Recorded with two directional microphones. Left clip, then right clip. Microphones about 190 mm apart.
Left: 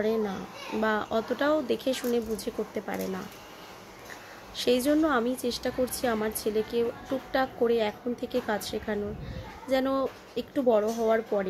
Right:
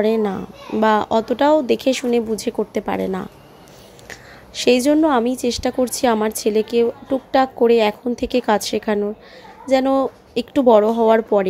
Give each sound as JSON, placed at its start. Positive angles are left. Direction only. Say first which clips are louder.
{"t": 0.0, "sound": "a woman's voice", "louder": "right 10 dB", "side_deg": -40}